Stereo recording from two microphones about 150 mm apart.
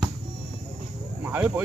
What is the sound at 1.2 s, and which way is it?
Speech, 10° right (ahead or behind).